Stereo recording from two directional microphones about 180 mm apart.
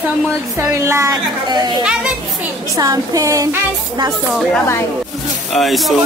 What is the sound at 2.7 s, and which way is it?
A woman's voice, 20° right (ahead or behind).